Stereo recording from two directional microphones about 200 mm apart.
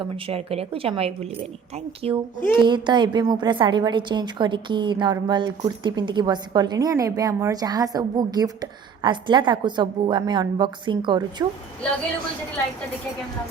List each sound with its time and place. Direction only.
0.0 s a woman's voice: 30° right (ahead or behind)
2.4 s speech: 10° left (ahead or behind)
2.6 s a woman's voice: 20° right (ahead or behind)